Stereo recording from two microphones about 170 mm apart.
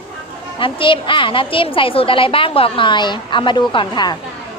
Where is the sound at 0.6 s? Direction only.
30° left (ahead or behind).